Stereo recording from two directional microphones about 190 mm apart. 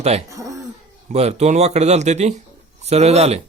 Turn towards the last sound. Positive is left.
turn(degrees=-35)  # may be behind; listen again after turning